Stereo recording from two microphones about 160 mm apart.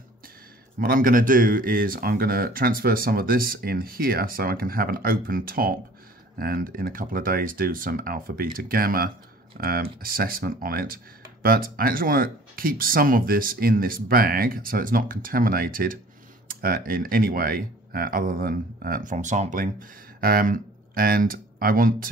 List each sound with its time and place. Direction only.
0.7 s speech: 60° right (ahead or behind)